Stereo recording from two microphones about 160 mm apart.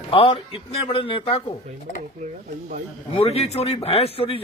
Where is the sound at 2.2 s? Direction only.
55° right (ahead or behind).